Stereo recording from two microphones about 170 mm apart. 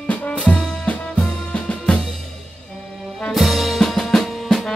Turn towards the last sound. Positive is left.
turn(degrees=0)  # may be behind; listen again after turning